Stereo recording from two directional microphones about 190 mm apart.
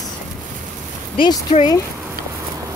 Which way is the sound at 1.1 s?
25° left (ahead or behind).